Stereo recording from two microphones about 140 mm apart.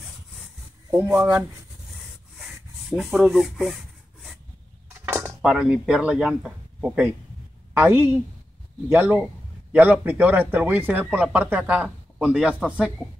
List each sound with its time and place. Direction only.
0.9 s speech: 10° right (ahead or behind)
2.9 s speech: 5° right (ahead or behind)
4.8 s a sound: 20° right (ahead or behind)
5.4 s a woman's voice: 5° right (ahead or behind)